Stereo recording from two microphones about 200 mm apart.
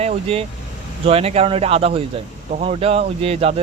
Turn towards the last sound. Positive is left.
turn(degrees=-30)  # may be behind; listen again after turning